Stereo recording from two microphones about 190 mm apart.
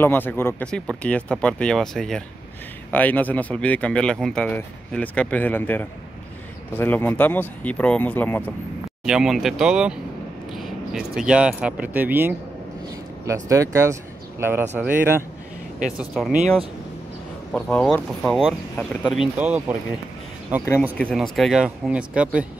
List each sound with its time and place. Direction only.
0.0 s speech: 10° left (ahead or behind)
9.0 s speech: centre (ahead or behind)
17.5 s speech: 5° left (ahead or behind)
21.0 s speech: centre (ahead or behind)